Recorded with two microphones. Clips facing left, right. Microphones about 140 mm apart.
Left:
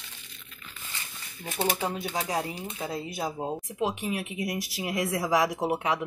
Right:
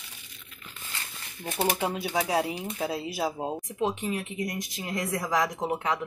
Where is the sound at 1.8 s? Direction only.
10° right (ahead or behind).